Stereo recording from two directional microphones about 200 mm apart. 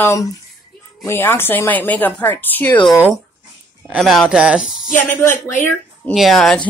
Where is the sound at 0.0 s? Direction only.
15° left (ahead or behind).